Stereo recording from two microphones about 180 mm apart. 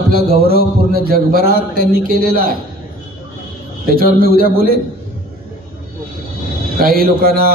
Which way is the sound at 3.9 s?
55° right (ahead or behind).